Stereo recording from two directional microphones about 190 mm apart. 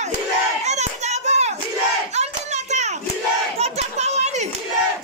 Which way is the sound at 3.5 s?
35° right (ahead or behind).